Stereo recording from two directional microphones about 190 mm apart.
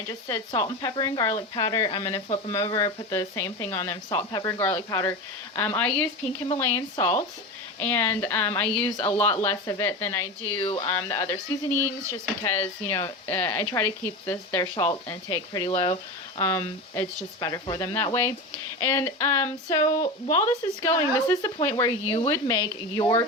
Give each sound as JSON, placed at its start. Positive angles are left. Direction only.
{"t": 0.1, "sound": "speech", "side_deg": 15}
{"t": 10.7, "sound": "speech", "side_deg": 25}
{"t": 10.9, "sound": "speech", "side_deg": 15}
{"t": 16.4, "sound": "speech", "side_deg": 15}